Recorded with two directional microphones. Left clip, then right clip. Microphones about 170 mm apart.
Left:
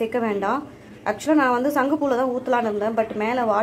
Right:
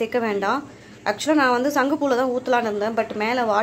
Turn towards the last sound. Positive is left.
turn(degrees=0)  # may be behind; listen again after turning